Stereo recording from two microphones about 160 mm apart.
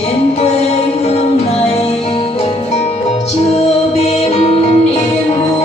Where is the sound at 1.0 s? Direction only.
40° left (ahead or behind).